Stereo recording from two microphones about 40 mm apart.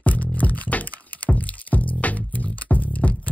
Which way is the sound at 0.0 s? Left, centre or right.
Left.